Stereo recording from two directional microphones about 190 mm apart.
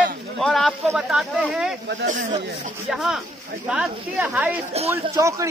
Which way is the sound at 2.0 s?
45° right (ahead or behind).